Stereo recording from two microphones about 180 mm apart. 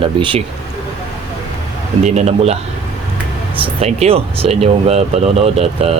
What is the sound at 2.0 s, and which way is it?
Speech, 40° right (ahead or behind).